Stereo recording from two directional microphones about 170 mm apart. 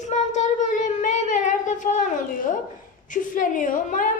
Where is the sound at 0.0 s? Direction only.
45° left (ahead or behind).